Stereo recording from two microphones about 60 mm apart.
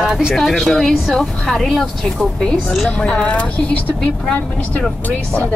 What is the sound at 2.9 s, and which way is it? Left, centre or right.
Speech, centre.